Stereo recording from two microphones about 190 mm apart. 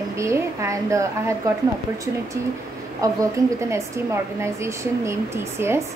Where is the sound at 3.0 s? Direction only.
15° right (ahead or behind).